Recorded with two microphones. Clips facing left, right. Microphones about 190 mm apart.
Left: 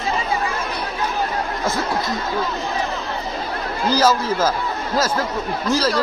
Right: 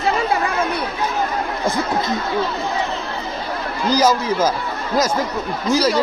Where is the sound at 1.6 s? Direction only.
15° right (ahead or behind).